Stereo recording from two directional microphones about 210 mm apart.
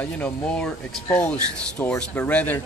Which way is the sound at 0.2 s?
5° left (ahead or behind).